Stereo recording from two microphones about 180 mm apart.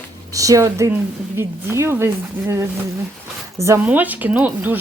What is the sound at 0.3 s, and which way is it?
Speech, 20° right (ahead or behind).